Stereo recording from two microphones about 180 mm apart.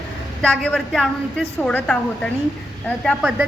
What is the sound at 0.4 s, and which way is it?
A woman's voice, 5° left (ahead or behind).